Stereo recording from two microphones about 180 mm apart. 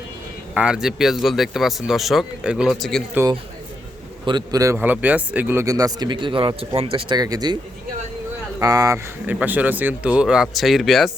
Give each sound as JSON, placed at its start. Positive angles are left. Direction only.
{"t": 0.5, "sound": "speech", "side_deg": -5}
{"t": 4.3, "sound": "speech", "side_deg": -20}
{"t": 9.2, "sound": "speech", "side_deg": -10}